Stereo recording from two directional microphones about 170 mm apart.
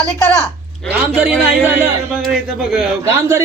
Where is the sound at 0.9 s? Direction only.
10° right (ahead or behind).